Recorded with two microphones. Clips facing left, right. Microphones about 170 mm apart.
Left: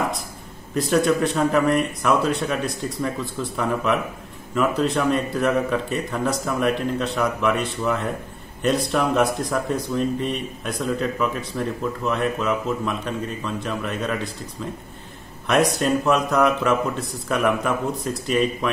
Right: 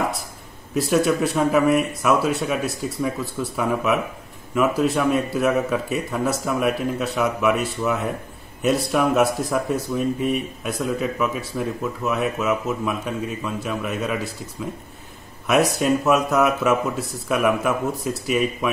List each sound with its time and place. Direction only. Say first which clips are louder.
0.7 s speech: even; 5° right (ahead or behind)
15.4 s speech: right 1 dB; 5° right (ahead or behind)